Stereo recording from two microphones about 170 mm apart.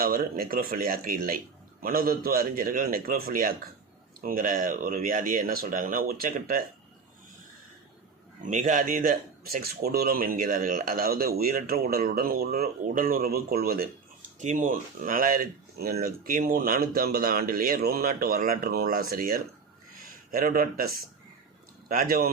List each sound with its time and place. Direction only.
0.0 s speech: 60° right (ahead or behind)
8.4 s speech: 50° right (ahead or behind); by 13.8 s 65° right (ahead or behind)
14.3 s speech: 50° right (ahead or behind)